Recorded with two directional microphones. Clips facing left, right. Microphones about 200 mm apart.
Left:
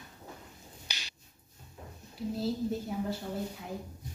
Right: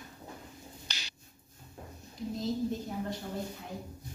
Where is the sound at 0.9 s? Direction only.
10° left (ahead or behind).